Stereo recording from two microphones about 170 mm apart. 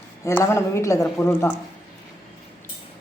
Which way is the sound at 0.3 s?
15° left (ahead or behind).